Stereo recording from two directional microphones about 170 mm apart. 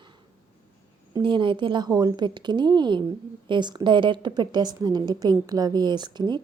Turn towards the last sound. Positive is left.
turn(degrees=-25)  # may be behind; listen again after turning